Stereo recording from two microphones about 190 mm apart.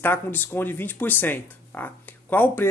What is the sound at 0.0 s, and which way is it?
Speech, 10° left (ahead or behind).